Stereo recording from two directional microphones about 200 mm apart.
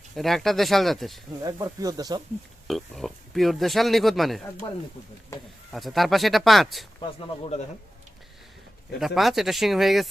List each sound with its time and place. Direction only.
0.2 s speech: centre (ahead or behind)
1.4 s speech: 20° right (ahead or behind)
2.6 s speech: centre (ahead or behind)
5.7 s speech: centre (ahead or behind)
7.0 s speech: 25° left (ahead or behind)
9.0 s speech: centre (ahead or behind)